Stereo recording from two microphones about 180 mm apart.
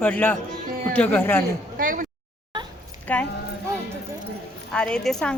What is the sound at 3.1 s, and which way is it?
Speech, 10° left (ahead or behind).